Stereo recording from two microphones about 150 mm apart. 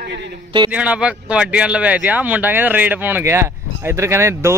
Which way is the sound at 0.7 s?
10° right (ahead or behind).